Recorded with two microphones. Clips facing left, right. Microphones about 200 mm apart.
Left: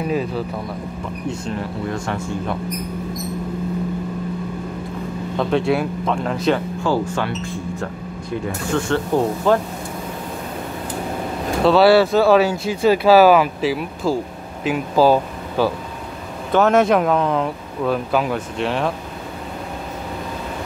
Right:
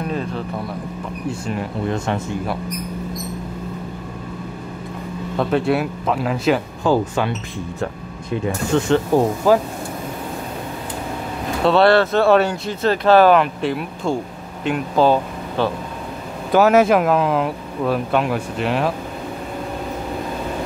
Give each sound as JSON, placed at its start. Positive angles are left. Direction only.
{"t": 0.0, "sound": "speech", "side_deg": 5}
{"t": 1.3, "sound": "speech", "side_deg": -10}
{"t": 1.9, "sound": "speech", "side_deg": -20}
{"t": 5.4, "sound": "speech", "side_deg": 0}
{"t": 6.8, "sound": "speech", "side_deg": -15}
{"t": 8.7, "sound": "speech", "side_deg": -20}
{"t": 9.5, "sound": "speech", "side_deg": -5}
{"t": 11.6, "sound": "speech", "side_deg": 5}
{"t": 16.5, "sound": "speech", "side_deg": -5}